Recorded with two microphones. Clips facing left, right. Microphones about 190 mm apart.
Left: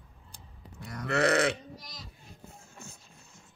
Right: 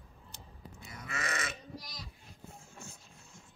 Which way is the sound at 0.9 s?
70° left (ahead or behind).